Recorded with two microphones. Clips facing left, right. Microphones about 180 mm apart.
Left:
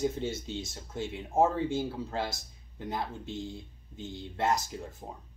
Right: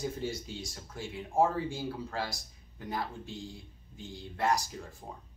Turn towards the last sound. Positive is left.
turn(degrees=25)  # may be behind; listen again after turning